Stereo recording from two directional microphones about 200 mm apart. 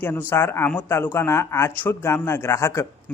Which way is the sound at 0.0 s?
10° left (ahead or behind).